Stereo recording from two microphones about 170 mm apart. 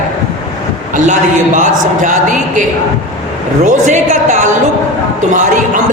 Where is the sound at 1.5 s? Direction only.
50° right (ahead or behind).